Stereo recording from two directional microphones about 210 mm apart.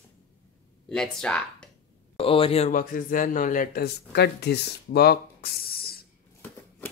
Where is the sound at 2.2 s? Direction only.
25° left (ahead or behind); by 6.0 s 45° left (ahead or behind).